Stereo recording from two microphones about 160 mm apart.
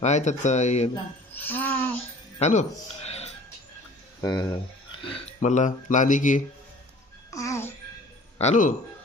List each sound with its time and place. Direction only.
0.0 s speech: 45° left (ahead or behind)
1.3 s music: 10° left (ahead or behind)
2.4 s speech: 45° left (ahead or behind)
4.2 s speech: 25° left (ahead or behind)
5.1 s speech: 45° left (ahead or behind)
7.3 s music: 20° left (ahead or behind)
8.4 s speech: 50° left (ahead or behind)